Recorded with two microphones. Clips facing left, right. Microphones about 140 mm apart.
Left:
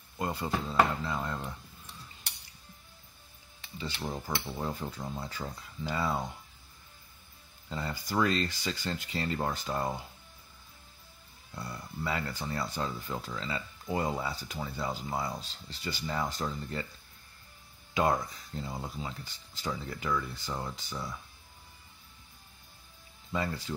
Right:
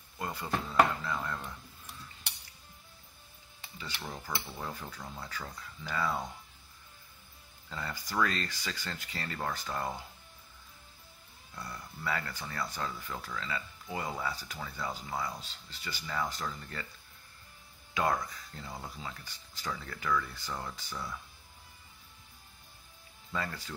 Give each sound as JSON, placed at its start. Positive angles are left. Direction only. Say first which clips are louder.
{"t": 0.2, "sound": "speech", "louder": "left 3 dB", "side_deg": 25}
{"t": 3.7, "sound": "speech", "louder": "left 5 dB", "side_deg": 25}
{"t": 7.7, "sound": "speech", "louder": "left 3 dB", "side_deg": 25}
{"t": 11.5, "sound": "speech", "louder": "left 4 dB", "side_deg": 25}
{"t": 17.9, "sound": "speech", "louder": "left 3 dB", "side_deg": 20}
{"t": 23.3, "sound": "speech", "louder": "left 4 dB", "side_deg": 20}